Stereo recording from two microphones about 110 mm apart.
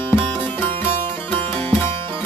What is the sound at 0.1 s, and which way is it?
Music, 20° left (ahead or behind).